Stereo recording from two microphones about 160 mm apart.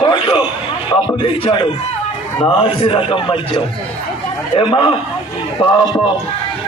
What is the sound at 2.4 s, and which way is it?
A man's voice, 30° left (ahead or behind).